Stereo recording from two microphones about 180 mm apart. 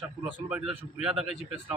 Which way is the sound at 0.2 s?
5° right (ahead or behind).